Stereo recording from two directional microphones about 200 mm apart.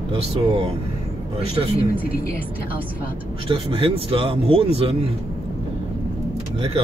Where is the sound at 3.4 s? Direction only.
25° right (ahead or behind).